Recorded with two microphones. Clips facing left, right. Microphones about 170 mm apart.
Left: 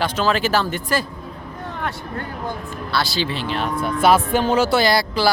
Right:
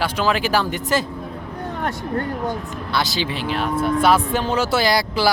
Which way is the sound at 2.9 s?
15° right (ahead or behind).